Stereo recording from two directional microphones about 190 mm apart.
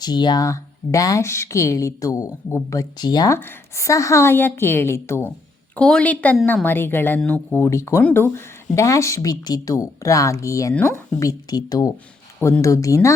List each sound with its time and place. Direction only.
0.0 s speech: 20° left (ahead or behind)